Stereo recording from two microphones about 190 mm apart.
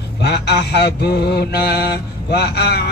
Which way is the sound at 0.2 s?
60° left (ahead or behind).